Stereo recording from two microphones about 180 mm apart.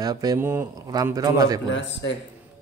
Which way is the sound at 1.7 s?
90° left.